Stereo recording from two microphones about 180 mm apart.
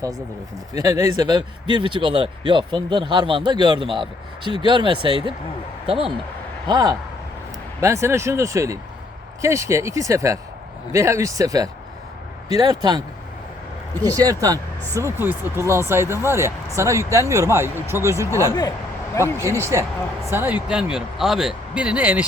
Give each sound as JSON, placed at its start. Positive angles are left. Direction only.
{"t": 0.7, "sound": "a man's voice", "side_deg": -20}
{"t": 14.2, "sound": "speech", "side_deg": -20}